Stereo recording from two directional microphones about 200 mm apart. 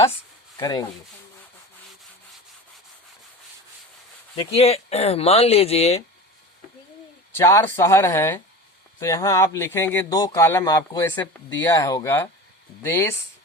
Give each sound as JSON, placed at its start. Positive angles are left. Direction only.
{"t": 0.5, "sound": "speech", "side_deg": 20}
{"t": 4.4, "sound": "speech", "side_deg": 30}
{"t": 7.3, "sound": "speech", "side_deg": 10}